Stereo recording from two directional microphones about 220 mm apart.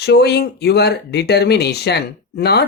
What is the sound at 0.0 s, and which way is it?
Speech, 50° left (ahead or behind).